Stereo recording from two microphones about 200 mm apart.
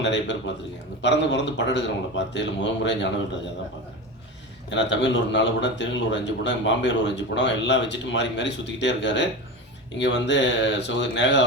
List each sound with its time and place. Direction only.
0.0 s a man's voice: 60° left (ahead or behind)
4.7 s a man's voice: 65° left (ahead or behind)